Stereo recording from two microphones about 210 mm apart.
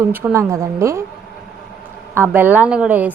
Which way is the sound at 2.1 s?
10° right (ahead or behind).